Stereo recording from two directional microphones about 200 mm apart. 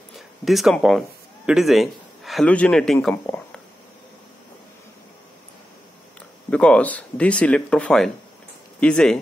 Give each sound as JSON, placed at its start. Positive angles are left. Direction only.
{"t": 0.5, "sound": "a man's voice", "side_deg": 0}
{"t": 6.5, "sound": "speech", "side_deg": 5}